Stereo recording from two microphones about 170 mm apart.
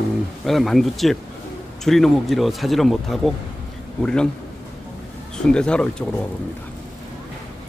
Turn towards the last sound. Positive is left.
turn(degrees=5)  # may be behind; listen again after turning